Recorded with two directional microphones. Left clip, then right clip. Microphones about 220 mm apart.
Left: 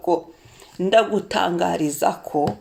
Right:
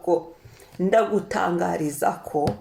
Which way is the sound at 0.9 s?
30° left (ahead or behind).